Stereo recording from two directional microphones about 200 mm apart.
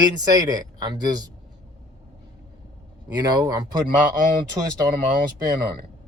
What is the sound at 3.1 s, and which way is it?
A man's voice, 20° right (ahead or behind).